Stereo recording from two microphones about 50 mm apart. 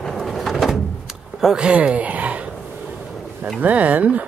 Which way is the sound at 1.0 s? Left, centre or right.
Centre.